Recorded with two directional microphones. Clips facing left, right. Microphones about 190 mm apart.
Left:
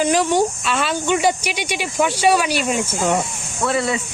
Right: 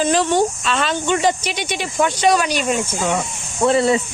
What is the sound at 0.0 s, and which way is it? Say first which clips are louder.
Speech: even; 10° left (ahead or behind).